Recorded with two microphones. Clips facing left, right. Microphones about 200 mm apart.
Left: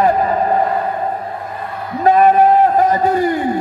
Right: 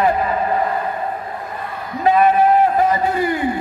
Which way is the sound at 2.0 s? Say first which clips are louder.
Left 3 dB; 40° left (ahead or behind).